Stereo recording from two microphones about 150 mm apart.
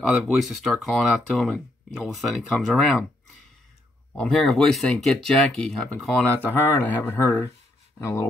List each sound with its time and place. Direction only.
0.1 s speech: centre (ahead or behind)
4.1 s speech: 5° left (ahead or behind)